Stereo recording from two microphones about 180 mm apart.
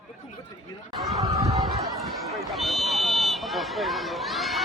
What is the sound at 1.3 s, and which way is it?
Speech, 15° right (ahead or behind).